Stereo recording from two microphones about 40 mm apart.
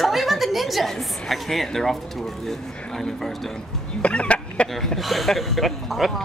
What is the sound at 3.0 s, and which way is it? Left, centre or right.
Speech, centre.